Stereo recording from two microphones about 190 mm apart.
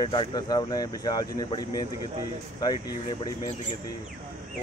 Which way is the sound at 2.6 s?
20° left (ahead or behind).